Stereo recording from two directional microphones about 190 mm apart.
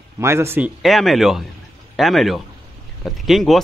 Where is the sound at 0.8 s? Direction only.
Centre (ahead or behind).